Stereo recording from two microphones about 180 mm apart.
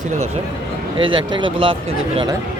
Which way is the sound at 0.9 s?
30° right (ahead or behind).